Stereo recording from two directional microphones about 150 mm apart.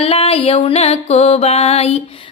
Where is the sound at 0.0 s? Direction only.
40° left (ahead or behind).